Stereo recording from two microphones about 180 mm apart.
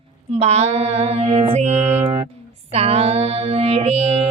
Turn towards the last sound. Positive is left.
turn(degrees=-35)  # may be behind; listen again after turning